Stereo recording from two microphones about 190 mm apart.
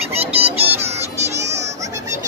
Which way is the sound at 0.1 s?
30° right (ahead or behind).